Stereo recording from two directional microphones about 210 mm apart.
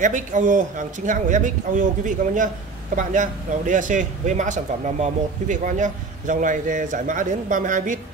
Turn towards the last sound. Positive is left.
turn(degrees=-40)  # may be behind; listen again after turning